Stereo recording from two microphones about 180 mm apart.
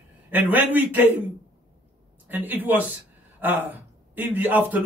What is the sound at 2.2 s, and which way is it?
A man's voice, 10° right (ahead or behind).